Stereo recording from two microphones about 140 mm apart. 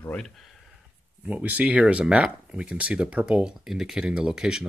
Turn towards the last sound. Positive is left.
turn(degrees=-5)  # may be behind; listen again after turning